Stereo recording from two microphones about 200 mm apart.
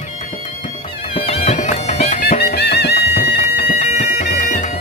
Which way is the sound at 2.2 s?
50° left (ahead or behind).